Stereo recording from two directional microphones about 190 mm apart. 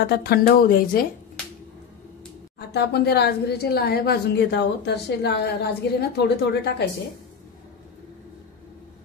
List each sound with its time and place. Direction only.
0.0 s speech: 55° left (ahead or behind)
2.7 s a woman's voice: 60° left (ahead or behind)